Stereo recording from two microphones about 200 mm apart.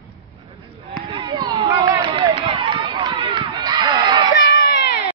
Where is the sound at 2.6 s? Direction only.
25° right (ahead or behind).